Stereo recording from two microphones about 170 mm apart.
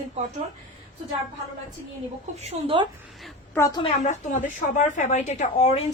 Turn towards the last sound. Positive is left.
turn(degrees=45)  # may be behind; listen again after turning